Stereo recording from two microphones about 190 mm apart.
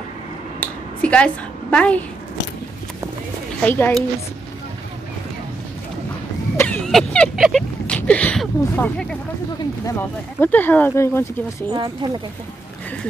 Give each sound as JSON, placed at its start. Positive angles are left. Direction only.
{"t": 0.6, "sound": "a sound", "side_deg": 5}
{"t": 3.6, "sound": "speech", "side_deg": 10}
{"t": 6.5, "sound": "cough", "side_deg": 15}
{"t": 6.9, "sound": "speech", "side_deg": 5}
{"t": 11.7, "sound": "speech", "side_deg": -25}